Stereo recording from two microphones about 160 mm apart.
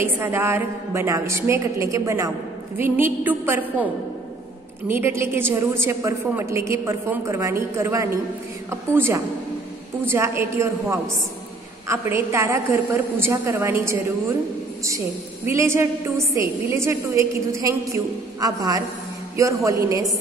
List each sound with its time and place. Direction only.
0.0 s a woman's voice: 15° right (ahead or behind)